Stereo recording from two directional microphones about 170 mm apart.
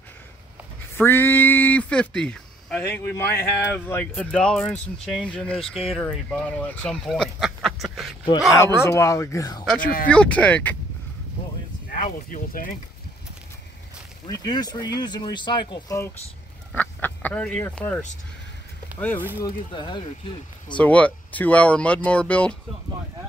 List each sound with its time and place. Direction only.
0.9 s speech: 15° left (ahead or behind)
8.8 s speech: 15° left (ahead or behind)
9.8 s speech: 60° left (ahead or behind)
10.0 s speech: 5° left (ahead or behind)
11.9 s speech: 50° left (ahead or behind)
14.2 s speech: 25° left (ahead or behind)
16.7 s speech: 10° left (ahead or behind)
19.4 s speech: 30° left (ahead or behind)
20.7 s speech: 10° left (ahead or behind)